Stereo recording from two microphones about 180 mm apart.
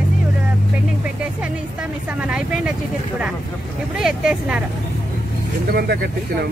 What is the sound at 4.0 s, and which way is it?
Speech, 5° right (ahead or behind).